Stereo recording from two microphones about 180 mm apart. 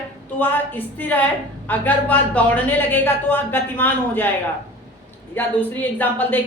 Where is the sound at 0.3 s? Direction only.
10° left (ahead or behind).